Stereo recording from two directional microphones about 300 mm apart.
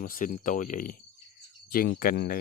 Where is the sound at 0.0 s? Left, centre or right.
Left.